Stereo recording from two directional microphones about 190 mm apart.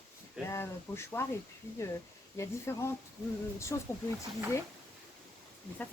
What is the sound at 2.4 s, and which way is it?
Speech, 15° left (ahead or behind).